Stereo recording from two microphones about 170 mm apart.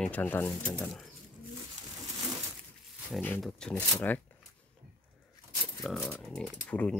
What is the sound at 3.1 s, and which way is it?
Speech, 5° left (ahead or behind).